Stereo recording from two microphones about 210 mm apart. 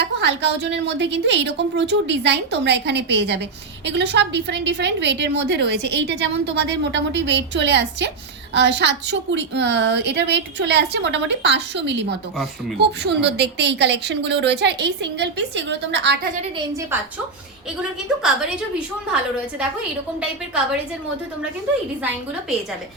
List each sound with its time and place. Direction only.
0.0 s a woman's voice: 55° right (ahead or behind)